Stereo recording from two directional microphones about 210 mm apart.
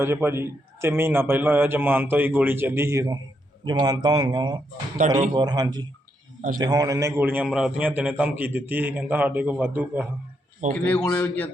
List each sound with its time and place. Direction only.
0.0 s a man's voice: 10° right (ahead or behind)
10.6 s speech: 35° right (ahead or behind)
11.0 s a man's voice: 10° left (ahead or behind)